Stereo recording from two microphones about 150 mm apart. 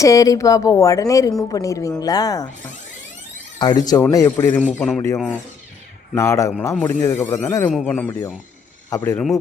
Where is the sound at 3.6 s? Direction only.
25° left (ahead or behind).